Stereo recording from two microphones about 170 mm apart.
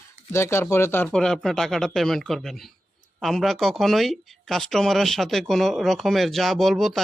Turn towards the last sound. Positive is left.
turn(degrees=0)  # may be behind; listen again after turning